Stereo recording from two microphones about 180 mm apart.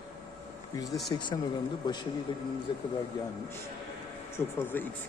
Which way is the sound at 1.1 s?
25° left (ahead or behind).